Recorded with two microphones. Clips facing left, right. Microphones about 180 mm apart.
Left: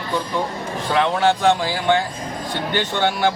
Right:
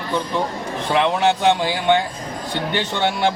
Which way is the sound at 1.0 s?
20° right (ahead or behind).